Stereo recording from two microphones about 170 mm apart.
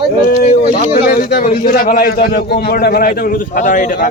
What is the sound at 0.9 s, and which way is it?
A man's voice, 65° left (ahead or behind).